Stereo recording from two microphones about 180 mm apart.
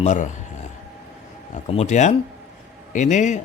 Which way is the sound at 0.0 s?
45° left (ahead or behind).